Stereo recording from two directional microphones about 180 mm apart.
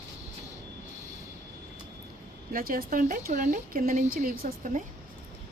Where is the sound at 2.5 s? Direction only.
50° right (ahead or behind).